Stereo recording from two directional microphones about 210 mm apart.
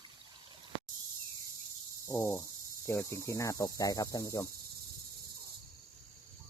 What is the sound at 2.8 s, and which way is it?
Cricket, 10° left (ahead or behind).